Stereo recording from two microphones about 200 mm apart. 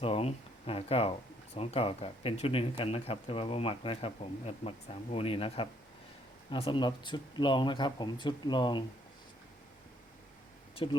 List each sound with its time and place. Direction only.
0.0 s speech: 30° left (ahead or behind)
10.8 s speech: 25° left (ahead or behind)